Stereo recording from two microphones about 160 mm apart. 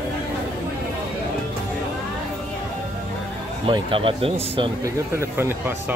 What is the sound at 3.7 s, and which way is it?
Speech, 30° right (ahead or behind).